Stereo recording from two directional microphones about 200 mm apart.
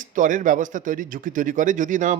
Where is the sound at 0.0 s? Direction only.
40° right (ahead or behind).